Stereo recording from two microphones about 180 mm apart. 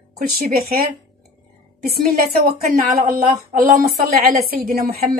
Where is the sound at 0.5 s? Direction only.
55° right (ahead or behind).